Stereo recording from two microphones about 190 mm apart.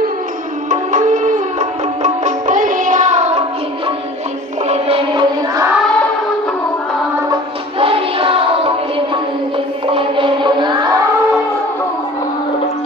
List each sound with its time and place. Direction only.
0.7 s music: 40° right (ahead or behind)
4.6 s music: 30° right (ahead or behind)
7.8 s music: 30° right (ahead or behind)